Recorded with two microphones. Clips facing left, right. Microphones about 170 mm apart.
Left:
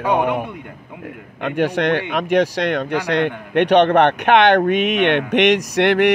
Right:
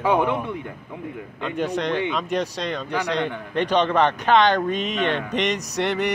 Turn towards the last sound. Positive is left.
turn(degrees=75)  # may be behind; listen again after turning